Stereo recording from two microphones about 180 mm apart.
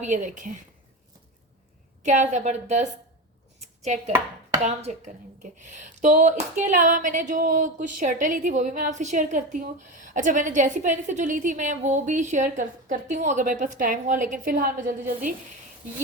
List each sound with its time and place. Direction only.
0.0 s speech: 45° right (ahead or behind)
2.0 s a woman's voice: 40° right (ahead or behind)
3.6 s chopping: 40° right (ahead or behind)
4.6 s speech: 40° right (ahead or behind)